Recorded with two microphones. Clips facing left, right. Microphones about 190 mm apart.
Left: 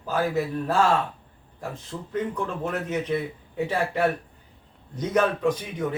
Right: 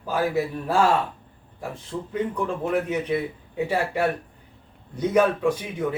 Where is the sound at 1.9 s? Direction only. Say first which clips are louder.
Right 2 dB; 5° right (ahead or behind).